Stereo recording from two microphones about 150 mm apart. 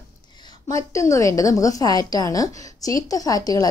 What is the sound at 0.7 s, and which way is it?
A woman's voice, 20° left (ahead or behind).